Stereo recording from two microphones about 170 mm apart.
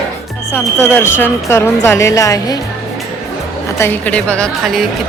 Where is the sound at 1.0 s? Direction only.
15° left (ahead or behind).